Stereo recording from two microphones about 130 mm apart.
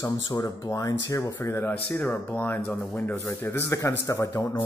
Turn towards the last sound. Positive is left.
turn(degrees=25)  # may be behind; listen again after turning